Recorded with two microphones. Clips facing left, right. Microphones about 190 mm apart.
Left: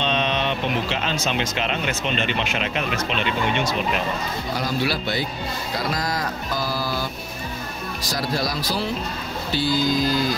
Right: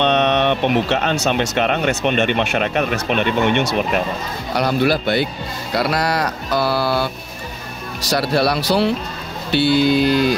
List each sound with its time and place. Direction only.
0.0 s speech: 65° right (ahead or behind)
8.1 s speech: 70° right (ahead or behind)